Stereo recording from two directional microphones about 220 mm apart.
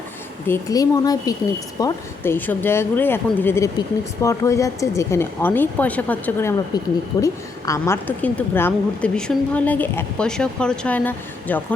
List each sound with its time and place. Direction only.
0.4 s a woman's voice: 15° left (ahead or behind)